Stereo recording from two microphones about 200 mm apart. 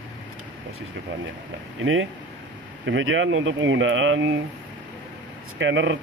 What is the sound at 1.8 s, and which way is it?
Speech, 75° right (ahead or behind).